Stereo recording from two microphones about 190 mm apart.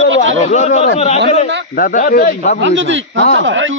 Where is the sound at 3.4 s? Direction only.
85° right.